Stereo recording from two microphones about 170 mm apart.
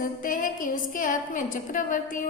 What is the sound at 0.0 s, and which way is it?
A woman's voice, 50° left (ahead or behind).